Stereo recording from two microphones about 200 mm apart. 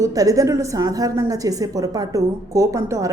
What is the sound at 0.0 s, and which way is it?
A woman's voice, 15° right (ahead or behind).